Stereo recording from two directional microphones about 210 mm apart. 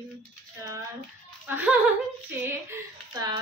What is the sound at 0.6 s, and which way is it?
A woman's voice, 15° right (ahead or behind).